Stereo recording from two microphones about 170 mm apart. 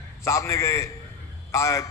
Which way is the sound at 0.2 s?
15° left (ahead or behind).